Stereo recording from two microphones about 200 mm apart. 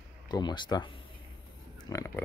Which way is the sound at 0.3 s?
20° left (ahead or behind).